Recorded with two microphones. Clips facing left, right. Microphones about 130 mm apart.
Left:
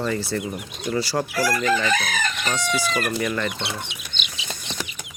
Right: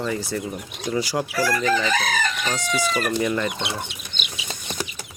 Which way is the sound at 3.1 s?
20° right (ahead or behind).